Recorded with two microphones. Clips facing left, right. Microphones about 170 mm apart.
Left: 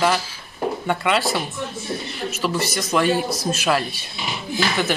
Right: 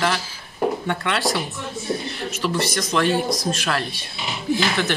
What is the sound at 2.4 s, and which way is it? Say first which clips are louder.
Speech: right 1 dB; 5° left (ahead or behind).